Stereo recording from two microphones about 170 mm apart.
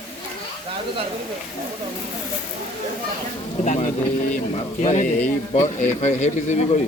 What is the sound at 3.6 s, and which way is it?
Speech, 45° left (ahead or behind).